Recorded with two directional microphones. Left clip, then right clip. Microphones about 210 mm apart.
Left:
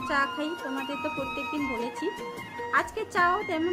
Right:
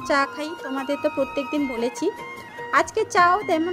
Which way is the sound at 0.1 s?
30° right (ahead or behind).